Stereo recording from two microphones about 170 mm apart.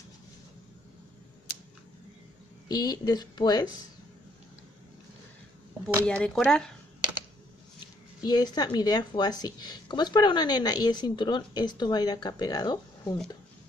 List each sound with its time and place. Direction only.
2.7 s speech: 20° left (ahead or behind)
6.0 s speech: 5° left (ahead or behind)
8.2 s speech: 25° left (ahead or behind)